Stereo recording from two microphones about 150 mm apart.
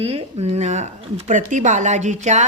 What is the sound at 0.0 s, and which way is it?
Speech, 40° right (ahead or behind).